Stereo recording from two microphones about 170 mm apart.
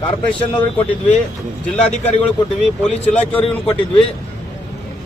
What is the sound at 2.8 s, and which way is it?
Speech, 5° left (ahead or behind).